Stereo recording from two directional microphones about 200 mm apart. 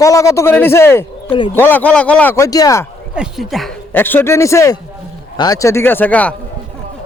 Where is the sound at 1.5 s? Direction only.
10° left (ahead or behind).